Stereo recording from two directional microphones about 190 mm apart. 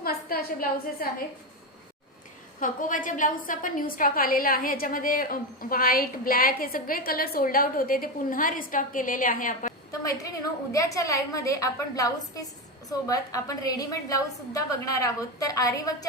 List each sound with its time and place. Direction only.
0.0 s a sound: 50° left (ahead or behind)
2.6 s a woman's voice: 45° left (ahead or behind)
10.1 s a woman's voice: 15° left (ahead or behind)